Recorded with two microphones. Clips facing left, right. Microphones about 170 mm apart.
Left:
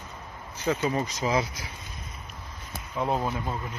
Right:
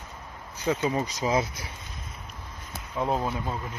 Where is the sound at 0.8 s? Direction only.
15° right (ahead or behind).